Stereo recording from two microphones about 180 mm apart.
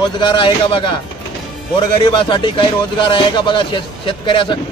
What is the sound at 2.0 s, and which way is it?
Speech, 25° left (ahead or behind).